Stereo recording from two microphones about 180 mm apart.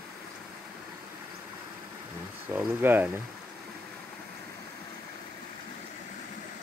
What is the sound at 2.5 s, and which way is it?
Speech, 10° right (ahead or behind).